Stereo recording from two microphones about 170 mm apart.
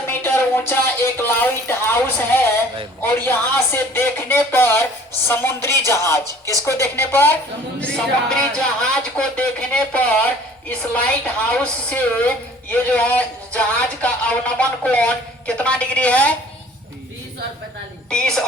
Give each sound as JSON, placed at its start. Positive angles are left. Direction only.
{"t": 0.3, "sound": "a woman's voice", "side_deg": 15}
{"t": 6.2, "sound": "speech", "side_deg": -20}
{"t": 6.6, "sound": "a woman's voice", "side_deg": 15}
{"t": 18.1, "sound": "speech", "side_deg": 5}